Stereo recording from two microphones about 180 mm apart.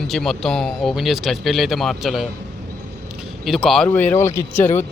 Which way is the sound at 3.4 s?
Centre (ahead or behind).